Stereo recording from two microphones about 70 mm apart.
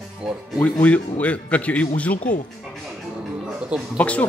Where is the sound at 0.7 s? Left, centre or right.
Left.